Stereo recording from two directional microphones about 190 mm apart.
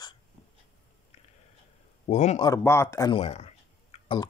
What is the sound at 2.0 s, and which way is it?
Speech, 35° left (ahead or behind).